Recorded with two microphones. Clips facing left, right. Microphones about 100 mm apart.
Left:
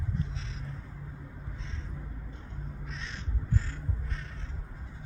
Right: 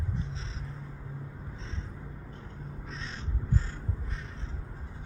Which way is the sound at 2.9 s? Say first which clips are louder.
Right 2 dB; 35° right (ahead or behind).